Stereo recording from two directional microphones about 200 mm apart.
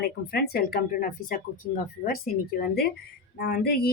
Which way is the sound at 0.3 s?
50° left (ahead or behind).